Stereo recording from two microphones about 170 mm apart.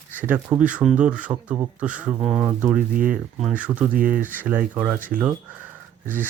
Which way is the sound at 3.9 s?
55° right (ahead or behind).